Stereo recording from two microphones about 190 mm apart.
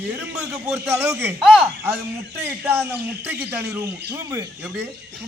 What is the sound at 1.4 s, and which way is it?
A man's voice, 5° right (ahead or behind).